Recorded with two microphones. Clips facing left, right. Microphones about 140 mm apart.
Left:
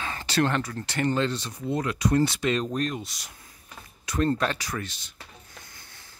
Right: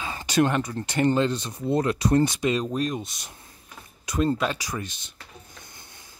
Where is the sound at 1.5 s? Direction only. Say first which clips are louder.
Right 4 dB; 30° right (ahead or behind).